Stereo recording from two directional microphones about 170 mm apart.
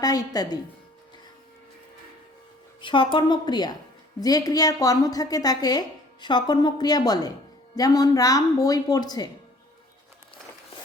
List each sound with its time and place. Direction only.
0.0 s a woman's voice: 20° left (ahead or behind)
2.8 s a woman's voice: 30° left (ahead or behind)